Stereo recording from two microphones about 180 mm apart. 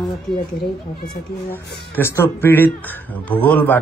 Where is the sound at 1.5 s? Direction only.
10° left (ahead or behind).